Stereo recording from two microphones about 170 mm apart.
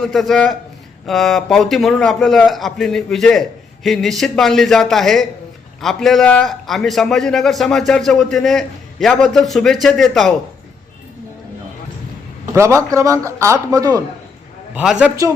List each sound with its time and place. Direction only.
0.0 s a man's voice: centre (ahead or behind)
12.5 s a man's voice: 15° right (ahead or behind)
14.8 s a man's voice: 5° right (ahead or behind)